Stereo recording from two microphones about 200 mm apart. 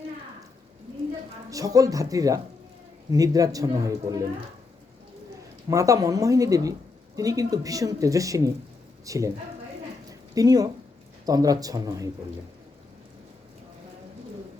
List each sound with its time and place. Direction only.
1.5 s speech: 15° right (ahead or behind)
5.6 s speech: 15° right (ahead or behind)
10.1 s a sound: 15° right (ahead or behind)
11.3 s speech: 20° right (ahead or behind)